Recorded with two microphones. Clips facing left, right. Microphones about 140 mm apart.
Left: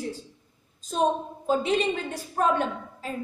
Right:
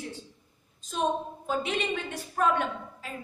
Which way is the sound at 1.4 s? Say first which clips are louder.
Left 7 dB; 35° left (ahead or behind).